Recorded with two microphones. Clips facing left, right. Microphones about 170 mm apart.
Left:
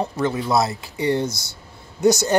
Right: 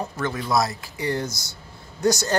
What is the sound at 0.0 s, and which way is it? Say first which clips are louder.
Speech: left 5 dB; 25° left (ahead or behind).